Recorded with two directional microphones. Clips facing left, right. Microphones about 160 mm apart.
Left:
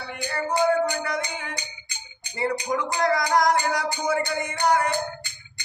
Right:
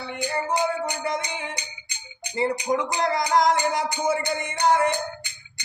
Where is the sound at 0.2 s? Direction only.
20° right (ahead or behind).